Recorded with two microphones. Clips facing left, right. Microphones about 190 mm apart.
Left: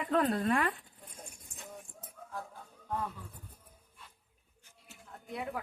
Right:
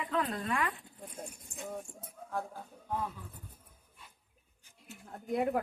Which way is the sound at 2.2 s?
40° right (ahead or behind).